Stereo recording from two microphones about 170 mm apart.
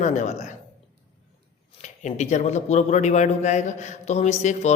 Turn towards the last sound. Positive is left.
turn(degrees=40)  # may be behind; listen again after turning